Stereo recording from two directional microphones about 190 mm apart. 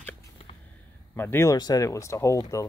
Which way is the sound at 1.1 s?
10° left (ahead or behind).